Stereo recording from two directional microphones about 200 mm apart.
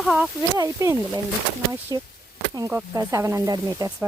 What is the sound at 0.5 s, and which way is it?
Speech, 15° right (ahead or behind).